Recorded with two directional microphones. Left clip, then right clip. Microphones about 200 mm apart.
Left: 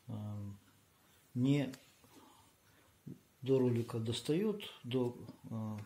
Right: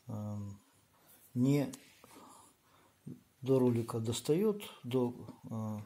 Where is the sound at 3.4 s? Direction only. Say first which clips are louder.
Right 2 dB; 45° right (ahead or behind).